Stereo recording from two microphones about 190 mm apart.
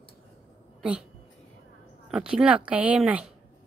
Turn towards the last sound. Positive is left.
turn(degrees=-5)  # may be behind; listen again after turning